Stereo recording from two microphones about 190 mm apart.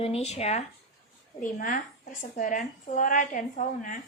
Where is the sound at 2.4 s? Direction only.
40° left (ahead or behind).